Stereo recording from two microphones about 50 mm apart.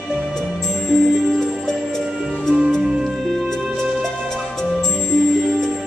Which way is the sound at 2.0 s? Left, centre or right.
Centre.